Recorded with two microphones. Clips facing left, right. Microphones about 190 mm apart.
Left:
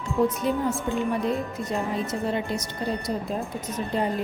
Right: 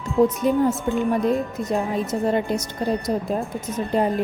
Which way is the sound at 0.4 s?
45° right (ahead or behind).